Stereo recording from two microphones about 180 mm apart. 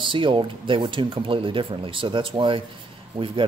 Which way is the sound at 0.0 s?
30° right (ahead or behind).